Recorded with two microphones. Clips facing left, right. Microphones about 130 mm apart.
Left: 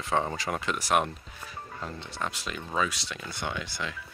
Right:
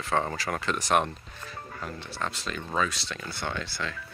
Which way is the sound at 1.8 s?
25° left (ahead or behind).